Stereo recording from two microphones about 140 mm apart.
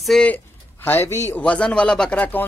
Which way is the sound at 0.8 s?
15° left (ahead or behind).